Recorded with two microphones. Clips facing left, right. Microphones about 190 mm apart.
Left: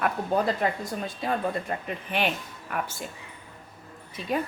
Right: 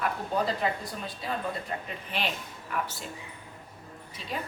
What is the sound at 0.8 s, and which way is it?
Speech, 50° left (ahead or behind).